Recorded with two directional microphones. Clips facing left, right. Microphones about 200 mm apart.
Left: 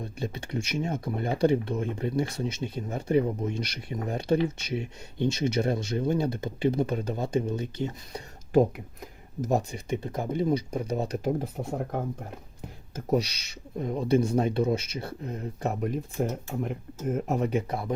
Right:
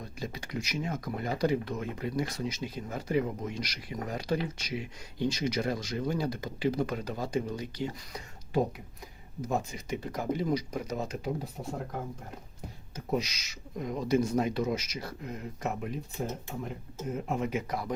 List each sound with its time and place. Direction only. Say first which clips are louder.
0.0 s speech: left 5 dB; 30° left (ahead or behind)
9.4 s speech: left 5 dB; 40° left (ahead or behind)
10.0 s speech: left 2 dB; 25° left (ahead or behind)
11.2 s speech: left 6 dB; 50° left (ahead or behind)
13.1 s speech: left 5 dB; 35° left (ahead or behind)